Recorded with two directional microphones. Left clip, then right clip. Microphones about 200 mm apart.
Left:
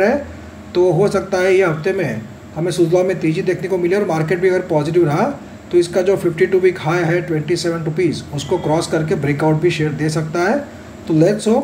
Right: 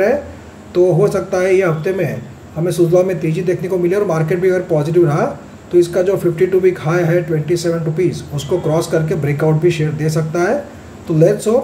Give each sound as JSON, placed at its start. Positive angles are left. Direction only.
{"t": 0.7, "sound": "a man's voice", "side_deg": -10}